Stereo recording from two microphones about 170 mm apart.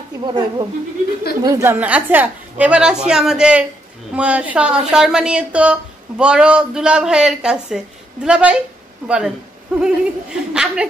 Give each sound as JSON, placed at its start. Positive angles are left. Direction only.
{"t": 0.2, "sound": "a woman's voice", "side_deg": -25}